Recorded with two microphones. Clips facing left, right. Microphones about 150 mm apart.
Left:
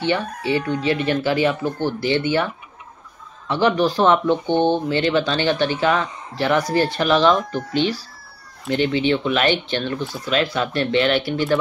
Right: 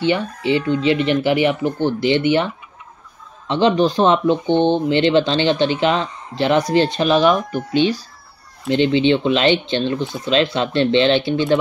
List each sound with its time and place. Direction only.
0.0 s speech: 15° right (ahead or behind)